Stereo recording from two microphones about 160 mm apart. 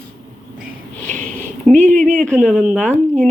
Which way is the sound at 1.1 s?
50° right (ahead or behind).